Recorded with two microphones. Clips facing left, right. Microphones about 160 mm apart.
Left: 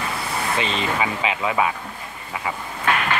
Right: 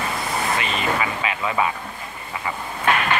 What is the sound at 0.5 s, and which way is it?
Speech, 30° left (ahead or behind).